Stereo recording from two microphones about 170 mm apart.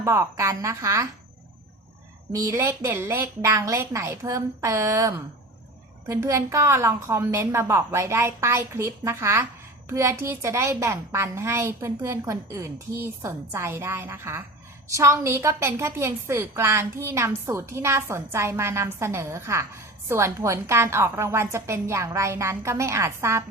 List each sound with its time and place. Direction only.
0.0 s a woman's voice: 15° right (ahead or behind)
2.3 s a woman's voice: 15° right (ahead or behind)